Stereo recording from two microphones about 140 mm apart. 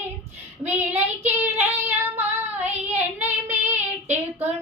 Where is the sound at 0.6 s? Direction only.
15° right (ahead or behind).